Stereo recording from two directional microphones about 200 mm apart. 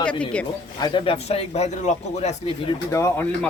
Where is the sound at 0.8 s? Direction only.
25° left (ahead or behind).